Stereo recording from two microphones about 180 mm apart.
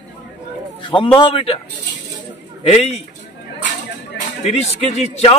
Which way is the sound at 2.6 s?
35° left (ahead or behind).